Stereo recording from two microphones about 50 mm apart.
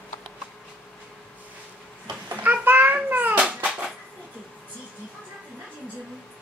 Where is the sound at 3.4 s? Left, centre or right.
Centre.